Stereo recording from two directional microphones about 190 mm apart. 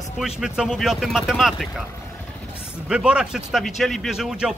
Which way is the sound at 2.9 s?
5° right (ahead or behind).